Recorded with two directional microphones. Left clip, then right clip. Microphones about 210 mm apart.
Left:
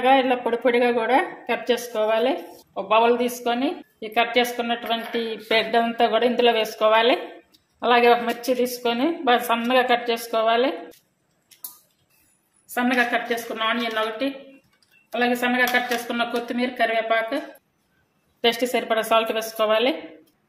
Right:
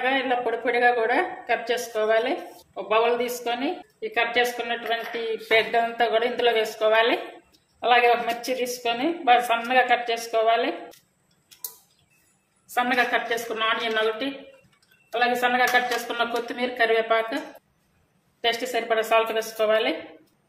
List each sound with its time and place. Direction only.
0.0 s a woman's voice: 30° left (ahead or behind)
12.7 s a woman's voice: 25° left (ahead or behind)
15.4 s a woman's voice: 25° left (ahead or behind)
18.4 s a woman's voice: 35° left (ahead or behind)